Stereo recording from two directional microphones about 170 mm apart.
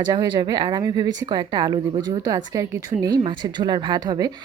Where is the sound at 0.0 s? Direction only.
25° right (ahead or behind).